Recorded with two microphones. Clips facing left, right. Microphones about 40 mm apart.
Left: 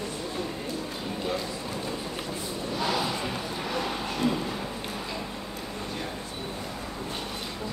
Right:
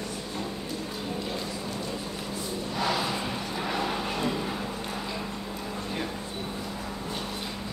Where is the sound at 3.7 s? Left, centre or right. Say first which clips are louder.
Right 1 dB; centre.